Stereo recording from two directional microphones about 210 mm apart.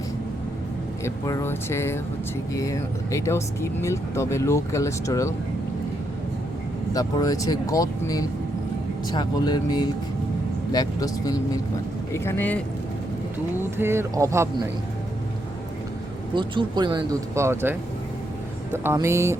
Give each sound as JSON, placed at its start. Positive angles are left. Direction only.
{"t": 1.0, "sound": "speech", "side_deg": 15}
{"t": 6.9, "sound": "speech", "side_deg": 15}
{"t": 13.6, "sound": "speech", "side_deg": -10}
{"t": 16.3, "sound": "speech", "side_deg": -20}